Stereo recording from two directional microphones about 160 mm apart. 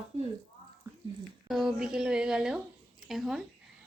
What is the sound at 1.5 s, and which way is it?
A woman's voice, centre (ahead or behind).